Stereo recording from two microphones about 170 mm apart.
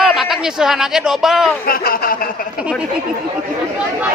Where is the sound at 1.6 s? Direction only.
60° left (ahead or behind).